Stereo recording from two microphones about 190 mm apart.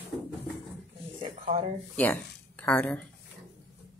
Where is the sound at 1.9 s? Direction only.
10° left (ahead or behind).